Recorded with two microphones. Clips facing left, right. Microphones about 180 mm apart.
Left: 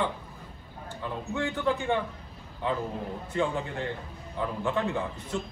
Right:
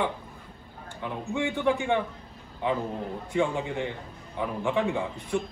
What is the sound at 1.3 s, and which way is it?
Speech, 15° right (ahead or behind).